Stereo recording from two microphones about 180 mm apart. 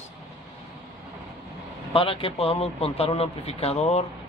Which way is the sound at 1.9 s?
30° left (ahead or behind).